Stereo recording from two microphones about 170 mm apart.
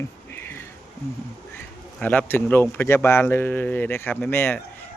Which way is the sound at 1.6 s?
10° left (ahead or behind).